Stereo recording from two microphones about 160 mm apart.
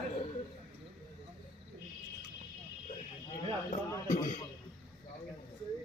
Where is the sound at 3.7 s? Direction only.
45° left (ahead or behind).